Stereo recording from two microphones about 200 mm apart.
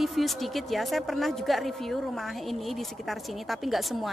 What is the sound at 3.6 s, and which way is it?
Speech, centre (ahead or behind).